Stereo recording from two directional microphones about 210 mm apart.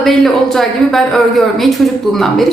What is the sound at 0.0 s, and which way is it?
Speech, centre (ahead or behind).